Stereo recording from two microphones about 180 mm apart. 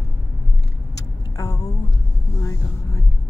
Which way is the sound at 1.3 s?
20° left (ahead or behind).